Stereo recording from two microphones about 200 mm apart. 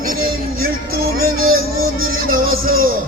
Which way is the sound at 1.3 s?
90° right.